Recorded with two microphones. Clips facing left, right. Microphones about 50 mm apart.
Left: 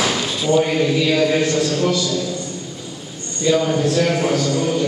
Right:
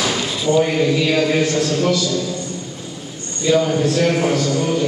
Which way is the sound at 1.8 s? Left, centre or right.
Centre.